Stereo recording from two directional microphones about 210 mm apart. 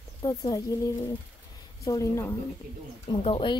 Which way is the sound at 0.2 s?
20° left (ahead or behind).